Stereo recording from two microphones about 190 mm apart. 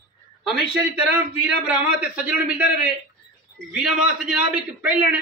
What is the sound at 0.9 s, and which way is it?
A man's voice, 5° right (ahead or behind).